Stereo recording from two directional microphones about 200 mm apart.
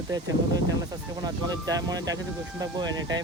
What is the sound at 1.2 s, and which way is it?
Speech, 20° right (ahead or behind).